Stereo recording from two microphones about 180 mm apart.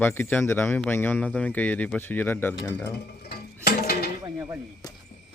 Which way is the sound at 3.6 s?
60° left (ahead or behind).